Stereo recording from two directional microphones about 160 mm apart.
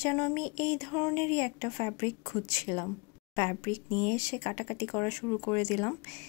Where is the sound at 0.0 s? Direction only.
15° left (ahead or behind).